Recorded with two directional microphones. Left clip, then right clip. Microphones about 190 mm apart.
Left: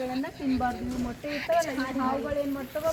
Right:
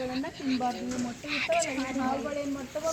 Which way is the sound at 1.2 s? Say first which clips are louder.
Left 2 dB; 20° left (ahead or behind).